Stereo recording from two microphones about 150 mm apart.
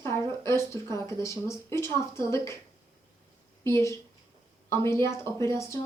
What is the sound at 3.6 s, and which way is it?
A woman's voice, 15° left (ahead or behind).